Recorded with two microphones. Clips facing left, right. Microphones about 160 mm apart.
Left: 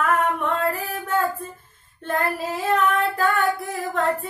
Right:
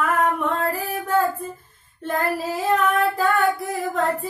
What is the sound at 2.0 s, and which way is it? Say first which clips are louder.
Child singing: right 1 dB; centre (ahead or behind).